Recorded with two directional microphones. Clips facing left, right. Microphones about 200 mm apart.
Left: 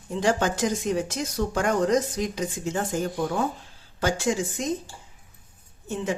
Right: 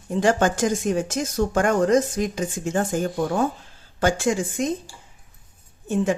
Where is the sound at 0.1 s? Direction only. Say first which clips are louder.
Right 4 dB; 50° right (ahead or behind).